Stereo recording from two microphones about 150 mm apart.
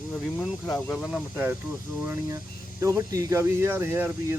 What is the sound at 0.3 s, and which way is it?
Speech, centre (ahead or behind).